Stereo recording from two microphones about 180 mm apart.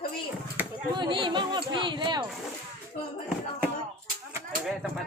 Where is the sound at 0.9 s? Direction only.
25° right (ahead or behind).